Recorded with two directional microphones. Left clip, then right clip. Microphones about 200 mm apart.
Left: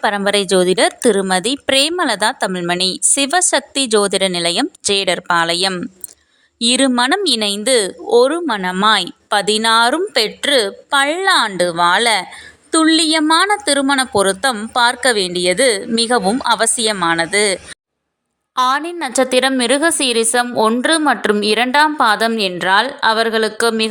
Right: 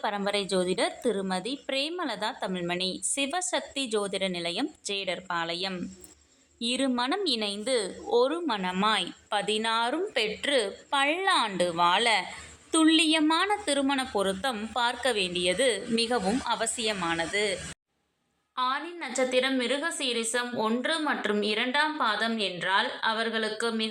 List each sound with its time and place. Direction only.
0.0 s a woman's voice: 45° left (ahead or behind)
14.5 s a woman's voice: 40° left (ahead or behind)